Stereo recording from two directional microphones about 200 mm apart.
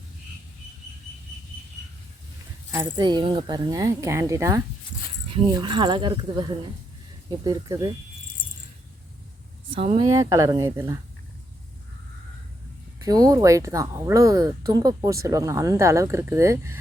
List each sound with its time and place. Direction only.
2.7 s speech: 20° right (ahead or behind)
7.3 s speech: 20° right (ahead or behind)
9.7 s speech: 30° right (ahead or behind)
10.1 s speech: 15° right (ahead or behind)
13.1 s speech: 20° right (ahead or behind)